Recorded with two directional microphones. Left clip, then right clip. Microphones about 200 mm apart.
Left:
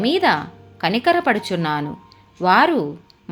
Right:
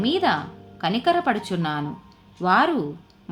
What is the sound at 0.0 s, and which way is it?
Speech, 25° left (ahead or behind).